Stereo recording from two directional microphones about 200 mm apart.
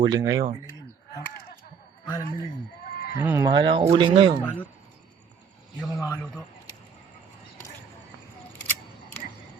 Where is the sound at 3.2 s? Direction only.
15° right (ahead or behind).